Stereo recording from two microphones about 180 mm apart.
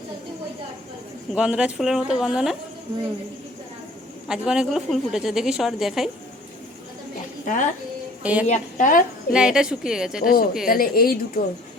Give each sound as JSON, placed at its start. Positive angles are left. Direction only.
{"t": 1.3, "sound": "a woman's voice", "side_deg": -5}
{"t": 4.3, "sound": "a woman's voice", "side_deg": -5}
{"t": 7.4, "sound": "speech", "side_deg": 45}
{"t": 8.2, "sound": "a woman's voice", "side_deg": -5}
{"t": 8.4, "sound": "a woman's voice", "side_deg": 40}
{"t": 9.3, "sound": "a woman's voice", "side_deg": -5}
{"t": 10.2, "sound": "a woman's voice", "side_deg": 55}